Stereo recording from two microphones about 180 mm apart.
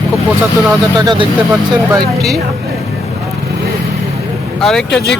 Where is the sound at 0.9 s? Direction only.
25° right (ahead or behind).